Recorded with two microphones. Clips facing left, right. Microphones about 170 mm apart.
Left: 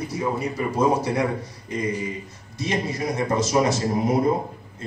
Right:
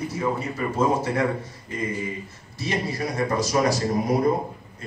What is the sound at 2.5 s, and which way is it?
A man's voice, 20° left (ahead or behind).